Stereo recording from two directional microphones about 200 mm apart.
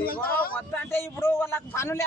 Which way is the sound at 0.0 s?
45° left (ahead or behind).